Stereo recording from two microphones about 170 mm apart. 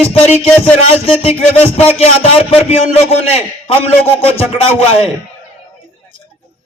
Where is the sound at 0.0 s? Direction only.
35° left (ahead or behind).